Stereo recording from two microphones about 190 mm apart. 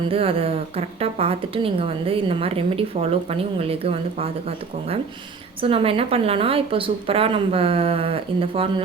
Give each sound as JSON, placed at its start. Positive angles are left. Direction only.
{"t": 0.1, "sound": "a woman's voice", "side_deg": -30}